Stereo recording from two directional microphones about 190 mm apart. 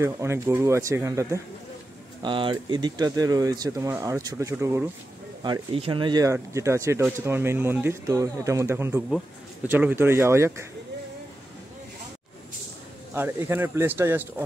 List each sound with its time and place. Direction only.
0.0 s speech: 15° right (ahead or behind)
2.2 s speech: 25° right (ahead or behind)
5.4 s speech: 25° right (ahead or behind)
13.1 s speech: 10° right (ahead or behind)